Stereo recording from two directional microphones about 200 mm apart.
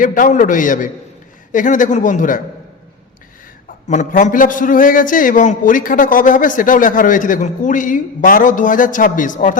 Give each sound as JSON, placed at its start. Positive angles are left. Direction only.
{"t": 0.0, "sound": "a man's voice", "side_deg": 40}
{"t": 3.8, "sound": "a man's voice", "side_deg": 40}